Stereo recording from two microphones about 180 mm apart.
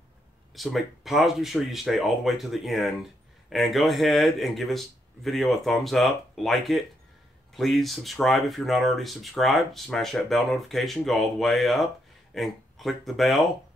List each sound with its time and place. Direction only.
0.6 s speech: centre (ahead or behind)